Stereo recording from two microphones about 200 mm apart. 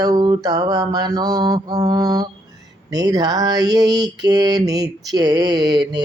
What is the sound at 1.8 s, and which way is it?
Mantra, 20° right (ahead or behind).